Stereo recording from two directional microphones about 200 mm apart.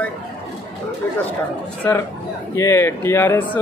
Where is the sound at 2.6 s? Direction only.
15° left (ahead or behind).